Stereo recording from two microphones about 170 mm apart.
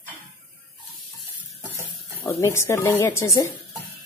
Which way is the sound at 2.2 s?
15° left (ahead or behind).